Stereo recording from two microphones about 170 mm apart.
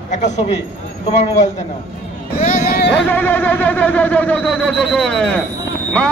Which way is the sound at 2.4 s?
65° left (ahead or behind).